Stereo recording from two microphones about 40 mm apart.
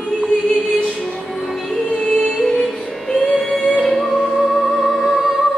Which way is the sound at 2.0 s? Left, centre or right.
Centre.